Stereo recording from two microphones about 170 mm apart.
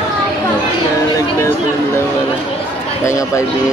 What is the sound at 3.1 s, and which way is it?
Speech, 15° left (ahead or behind).